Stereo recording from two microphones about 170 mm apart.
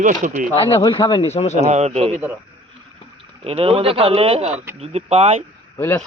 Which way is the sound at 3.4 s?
35° right (ahead or behind).